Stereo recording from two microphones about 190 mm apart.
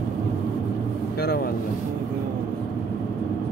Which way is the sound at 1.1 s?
55° left (ahead or behind).